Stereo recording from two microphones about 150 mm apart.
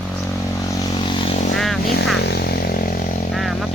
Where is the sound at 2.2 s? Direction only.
90° left; by 3.1 s 70° left (ahead or behind).